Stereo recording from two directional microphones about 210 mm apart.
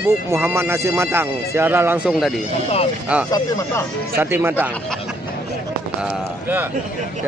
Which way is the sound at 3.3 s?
15° left (ahead or behind).